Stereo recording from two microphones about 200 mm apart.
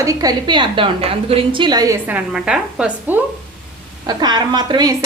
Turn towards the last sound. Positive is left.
turn(degrees=-20)  # may be behind; listen again after turning